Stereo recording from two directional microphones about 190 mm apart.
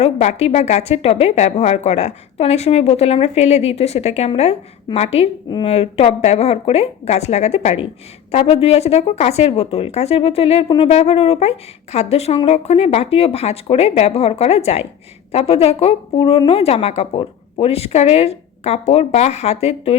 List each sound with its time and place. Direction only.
0.0 s speech: 35° left (ahead or behind)